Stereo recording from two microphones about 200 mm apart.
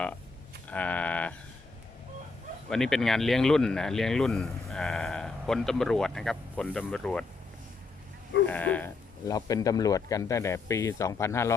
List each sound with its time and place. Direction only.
0.7 s a sound: 5° left (ahead or behind)
2.6 s speech: 5° left (ahead or behind)
8.4 s speech: 5° left (ahead or behind)